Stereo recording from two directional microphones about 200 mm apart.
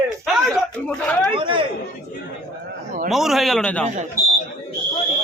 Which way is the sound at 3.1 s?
Centre (ahead or behind).